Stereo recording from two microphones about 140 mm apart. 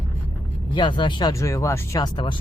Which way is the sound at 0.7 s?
35° left (ahead or behind).